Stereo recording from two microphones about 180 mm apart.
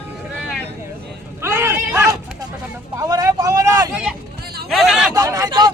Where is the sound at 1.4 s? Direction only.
15° right (ahead or behind).